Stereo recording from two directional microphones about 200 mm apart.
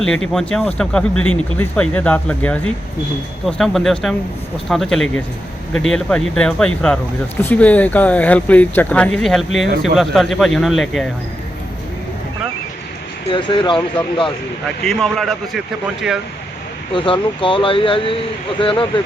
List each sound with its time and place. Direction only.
0.0 s speech: 5° left (ahead or behind)
13.3 s speech: 25° left (ahead or behind)
14.8 s speech: centre (ahead or behind)
16.9 s speech: 25° left (ahead or behind)